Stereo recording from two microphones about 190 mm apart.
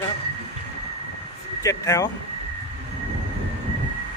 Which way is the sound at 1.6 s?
15° left (ahead or behind).